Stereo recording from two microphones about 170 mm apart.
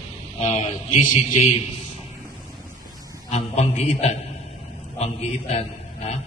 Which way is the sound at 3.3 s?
40° left (ahead or behind).